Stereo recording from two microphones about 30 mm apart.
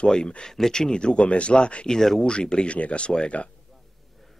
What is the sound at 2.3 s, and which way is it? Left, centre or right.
Speech, left.